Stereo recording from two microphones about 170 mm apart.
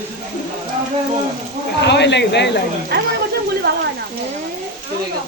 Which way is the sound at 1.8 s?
90° left.